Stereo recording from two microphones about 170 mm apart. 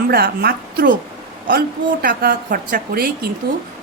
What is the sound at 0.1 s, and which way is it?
A woman's voice, 65° right (ahead or behind).